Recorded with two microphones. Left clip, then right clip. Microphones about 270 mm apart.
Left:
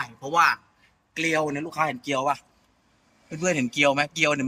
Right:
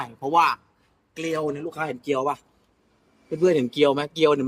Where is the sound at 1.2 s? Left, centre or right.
Left.